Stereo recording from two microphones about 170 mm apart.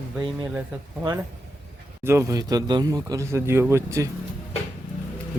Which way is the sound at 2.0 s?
15° right (ahead or behind).